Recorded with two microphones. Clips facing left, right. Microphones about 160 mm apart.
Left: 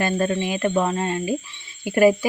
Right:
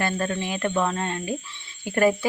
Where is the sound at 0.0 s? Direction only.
15° left (ahead or behind).